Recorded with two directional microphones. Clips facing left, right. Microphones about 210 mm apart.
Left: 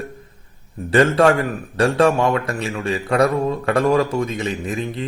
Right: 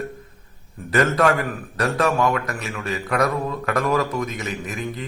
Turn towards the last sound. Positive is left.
turn(degrees=30)  # may be behind; listen again after turning